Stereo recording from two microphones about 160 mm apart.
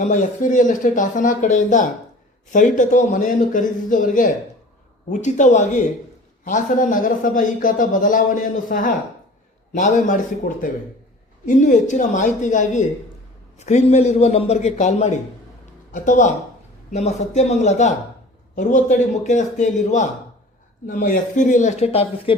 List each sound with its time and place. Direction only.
0.0 s speech: 50° left (ahead or behind)